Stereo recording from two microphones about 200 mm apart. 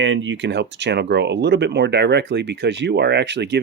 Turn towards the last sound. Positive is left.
turn(degrees=-60)  # may be behind; listen again after turning